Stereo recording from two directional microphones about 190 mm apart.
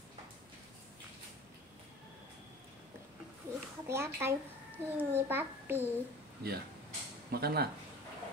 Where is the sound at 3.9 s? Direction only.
15° right (ahead or behind).